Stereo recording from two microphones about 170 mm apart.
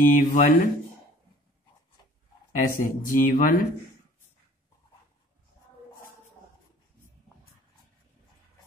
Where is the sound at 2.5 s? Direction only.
50° left (ahead or behind).